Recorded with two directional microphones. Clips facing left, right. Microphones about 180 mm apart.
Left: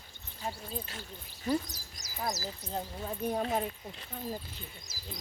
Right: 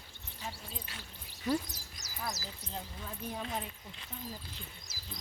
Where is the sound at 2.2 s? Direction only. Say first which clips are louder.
Left 5 dB; 40° left (ahead or behind).